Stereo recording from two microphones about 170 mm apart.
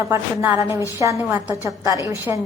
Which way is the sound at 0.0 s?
15° right (ahead or behind).